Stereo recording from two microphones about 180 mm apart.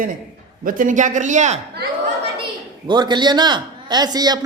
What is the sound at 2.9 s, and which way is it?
Speech, 25° right (ahead or behind).